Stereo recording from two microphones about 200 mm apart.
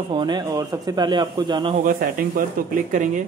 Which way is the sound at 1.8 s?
45° right (ahead or behind).